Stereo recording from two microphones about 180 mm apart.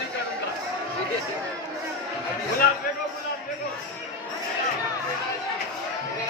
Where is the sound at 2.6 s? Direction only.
55° left (ahead or behind).